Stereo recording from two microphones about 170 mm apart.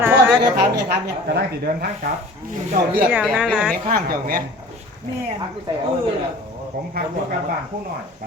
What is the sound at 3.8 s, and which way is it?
Speech, 55° right (ahead or behind).